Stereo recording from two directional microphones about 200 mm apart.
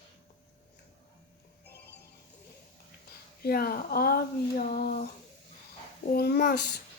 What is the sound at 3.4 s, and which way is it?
Speech, 50° left (ahead or behind).